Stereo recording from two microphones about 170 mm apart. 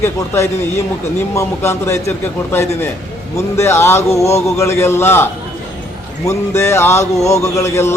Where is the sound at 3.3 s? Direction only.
15° left (ahead or behind).